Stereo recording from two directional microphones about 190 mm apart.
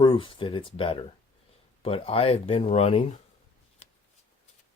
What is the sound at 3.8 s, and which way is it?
Shuffling cards, 35° left (ahead or behind).